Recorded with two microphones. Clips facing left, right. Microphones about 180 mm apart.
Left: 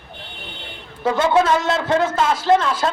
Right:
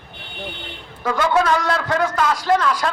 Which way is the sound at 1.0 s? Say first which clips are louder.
Left 2 dB; 25° left (ahead or behind).